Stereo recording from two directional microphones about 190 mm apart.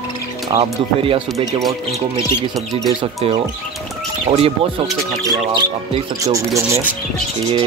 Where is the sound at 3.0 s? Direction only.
25° right (ahead or behind).